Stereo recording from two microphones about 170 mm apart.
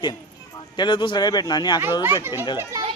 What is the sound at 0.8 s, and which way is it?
Speech, 30° left (ahead or behind).